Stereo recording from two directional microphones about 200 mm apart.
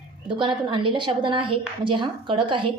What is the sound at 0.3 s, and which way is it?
A woman's voice, 25° right (ahead or behind).